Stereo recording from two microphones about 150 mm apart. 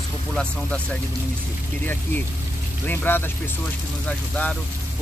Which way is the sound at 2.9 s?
15° left (ahead or behind).